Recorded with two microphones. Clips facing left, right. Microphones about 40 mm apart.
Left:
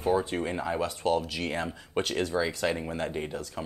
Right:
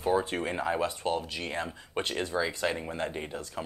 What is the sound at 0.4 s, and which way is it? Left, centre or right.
Speech, right.